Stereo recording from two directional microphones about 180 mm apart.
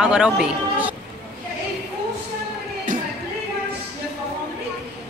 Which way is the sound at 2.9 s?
45° right (ahead or behind).